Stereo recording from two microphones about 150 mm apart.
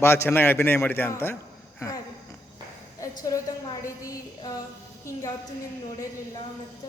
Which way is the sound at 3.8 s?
20° left (ahead or behind).